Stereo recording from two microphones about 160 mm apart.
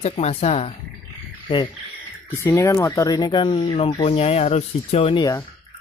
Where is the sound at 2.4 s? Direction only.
20° left (ahead or behind).